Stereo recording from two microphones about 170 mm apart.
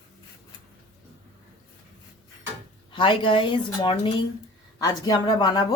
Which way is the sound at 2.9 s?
30° left (ahead or behind).